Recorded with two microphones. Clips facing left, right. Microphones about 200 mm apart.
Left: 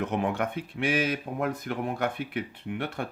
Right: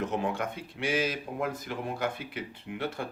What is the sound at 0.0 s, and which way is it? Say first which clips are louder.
Speech: left 3 dB; 60° left (ahead or behind).